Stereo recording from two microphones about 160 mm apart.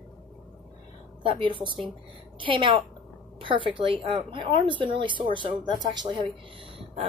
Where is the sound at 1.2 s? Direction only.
30° right (ahead or behind).